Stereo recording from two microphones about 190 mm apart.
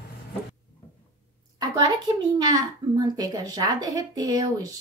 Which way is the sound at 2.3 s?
20° right (ahead or behind).